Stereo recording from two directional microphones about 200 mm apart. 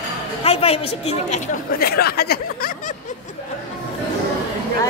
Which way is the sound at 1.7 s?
50° left (ahead or behind).